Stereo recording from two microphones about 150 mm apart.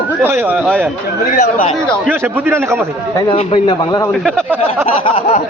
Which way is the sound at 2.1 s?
15° right (ahead or behind).